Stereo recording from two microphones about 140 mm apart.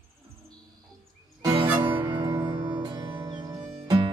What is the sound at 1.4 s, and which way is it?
Music, 30° right (ahead or behind).